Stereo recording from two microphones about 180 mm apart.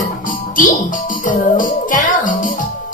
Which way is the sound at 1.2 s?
45° left (ahead or behind).